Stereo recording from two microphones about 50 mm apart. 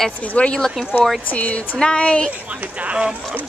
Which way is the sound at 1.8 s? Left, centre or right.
Centre.